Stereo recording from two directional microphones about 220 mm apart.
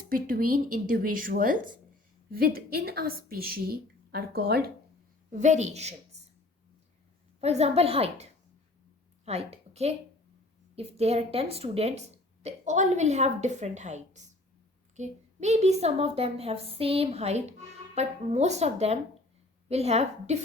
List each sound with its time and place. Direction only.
0.1 s a woman's voice: 40° right (ahead or behind)
5.3 s speech: 35° right (ahead or behind)
7.4 s a woman's voice: 30° right (ahead or behind)